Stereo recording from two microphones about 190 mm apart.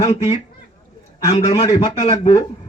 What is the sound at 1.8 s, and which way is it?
Speech, 35° left (ahead or behind).